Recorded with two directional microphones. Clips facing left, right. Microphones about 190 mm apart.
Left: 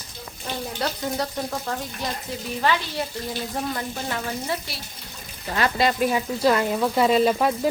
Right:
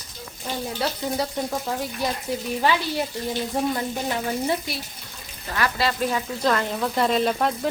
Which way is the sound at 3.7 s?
20° right (ahead or behind).